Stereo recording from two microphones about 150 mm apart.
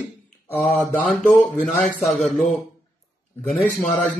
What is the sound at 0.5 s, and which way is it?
Speech, 55° left (ahead or behind).